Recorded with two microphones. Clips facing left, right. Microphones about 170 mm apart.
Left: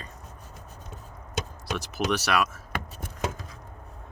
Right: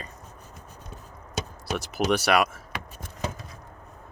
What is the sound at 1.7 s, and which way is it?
Speech, 55° right (ahead or behind).